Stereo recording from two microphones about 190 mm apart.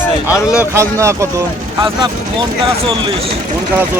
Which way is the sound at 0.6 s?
15° right (ahead or behind).